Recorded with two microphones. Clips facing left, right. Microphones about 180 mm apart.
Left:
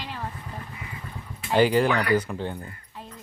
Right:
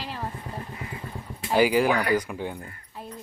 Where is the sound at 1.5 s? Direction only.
10° right (ahead or behind).